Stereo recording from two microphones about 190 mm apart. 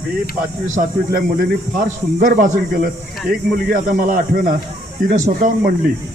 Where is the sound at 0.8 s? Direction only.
45° right (ahead or behind).